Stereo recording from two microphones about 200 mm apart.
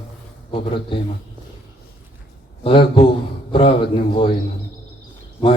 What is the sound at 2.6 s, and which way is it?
A man's voice, 25° left (ahead or behind).